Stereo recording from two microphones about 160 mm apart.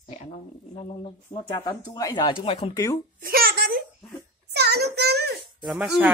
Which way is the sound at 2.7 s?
20° left (ahead or behind).